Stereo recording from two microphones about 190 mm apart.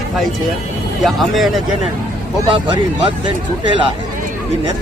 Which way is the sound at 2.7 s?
25° right (ahead or behind).